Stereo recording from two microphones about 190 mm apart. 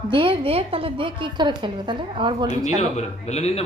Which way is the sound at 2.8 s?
35° left (ahead or behind).